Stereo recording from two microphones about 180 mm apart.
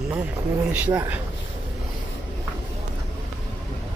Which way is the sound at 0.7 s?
10° right (ahead or behind).